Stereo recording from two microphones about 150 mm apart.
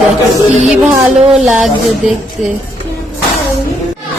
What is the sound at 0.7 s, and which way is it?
Speech, 5° right (ahead or behind).